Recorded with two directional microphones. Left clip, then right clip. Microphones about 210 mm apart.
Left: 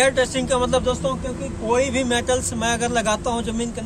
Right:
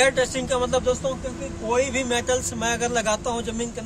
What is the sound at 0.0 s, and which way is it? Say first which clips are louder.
Speech: left 2 dB; 10° right (ahead or behind).